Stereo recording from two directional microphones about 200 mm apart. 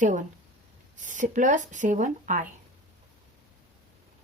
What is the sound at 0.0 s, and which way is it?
Speech, 40° right (ahead or behind).